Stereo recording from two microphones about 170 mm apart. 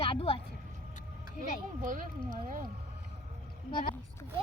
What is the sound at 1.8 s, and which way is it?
Speech, 55° right (ahead or behind).